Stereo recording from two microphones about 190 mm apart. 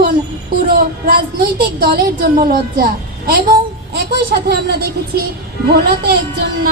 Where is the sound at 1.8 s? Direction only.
50° right (ahead or behind).